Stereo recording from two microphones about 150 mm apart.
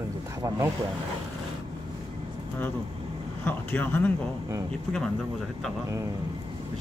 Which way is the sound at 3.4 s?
10° left (ahead or behind).